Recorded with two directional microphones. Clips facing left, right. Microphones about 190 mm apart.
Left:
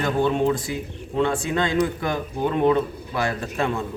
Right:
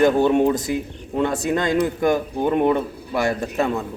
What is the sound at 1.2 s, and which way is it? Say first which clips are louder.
Speech: right 5 dB; 40° right (ahead or behind).